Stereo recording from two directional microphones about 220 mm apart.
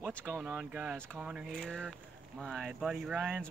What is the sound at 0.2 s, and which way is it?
Speech, 10° right (ahead or behind).